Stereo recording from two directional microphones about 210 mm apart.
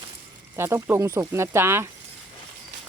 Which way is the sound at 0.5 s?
10° right (ahead or behind).